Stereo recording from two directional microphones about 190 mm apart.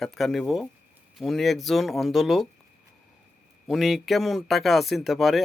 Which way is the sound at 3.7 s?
Centre (ahead or behind).